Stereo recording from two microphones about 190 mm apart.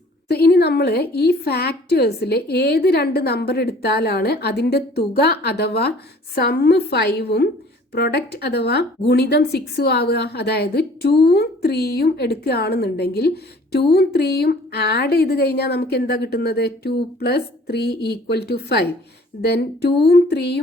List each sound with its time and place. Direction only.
0.3 s a woman's voice: 60° left (ahead or behind)